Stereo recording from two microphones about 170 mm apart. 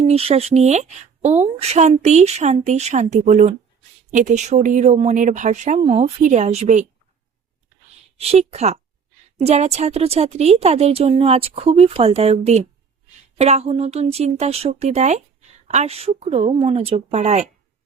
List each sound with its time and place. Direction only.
0.0 s speech: 35° right (ahead or behind)
8.2 s speech: 40° right (ahead or behind)